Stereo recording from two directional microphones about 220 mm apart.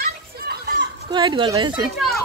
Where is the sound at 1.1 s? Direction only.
20° right (ahead or behind).